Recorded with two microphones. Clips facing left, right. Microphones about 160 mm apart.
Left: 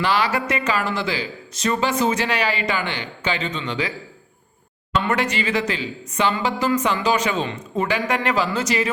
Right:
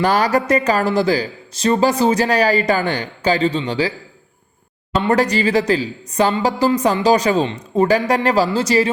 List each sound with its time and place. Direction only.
0.0 s speech: 45° right (ahead or behind)
5.0 s speech: 35° right (ahead or behind)